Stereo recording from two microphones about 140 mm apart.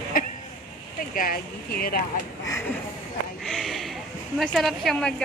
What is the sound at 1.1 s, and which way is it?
Speech, 90° left.